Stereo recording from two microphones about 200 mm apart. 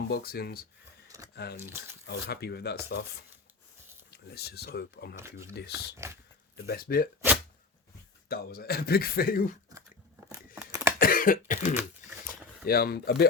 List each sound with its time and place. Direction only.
0.1 s speech: 50° left (ahead or behind)
1.1 s speech: 20° right (ahead or behind)
2.0 s speech: 55° left (ahead or behind)
5.1 s speech: 15° right (ahead or behind)
5.5 s speech: 55° left (ahead or behind)
6.0 s speech: 15° right (ahead or behind)
6.7 s speech: 50° left (ahead or behind)
8.3 s speech: 50° left (ahead or behind)
10.3 s tearing: 15° right (ahead or behind)
11.0 s cough: 45° left (ahead or behind)
12.2 s a sound: 45° left (ahead or behind)